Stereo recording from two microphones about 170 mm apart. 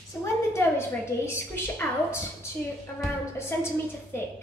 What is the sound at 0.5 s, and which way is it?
A woman's voice, 15° left (ahead or behind).